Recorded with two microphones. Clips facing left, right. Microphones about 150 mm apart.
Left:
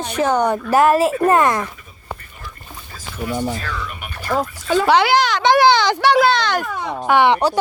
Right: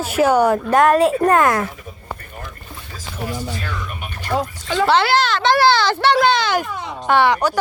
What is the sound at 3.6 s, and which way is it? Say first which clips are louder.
Speech: even; 25° right (ahead or behind).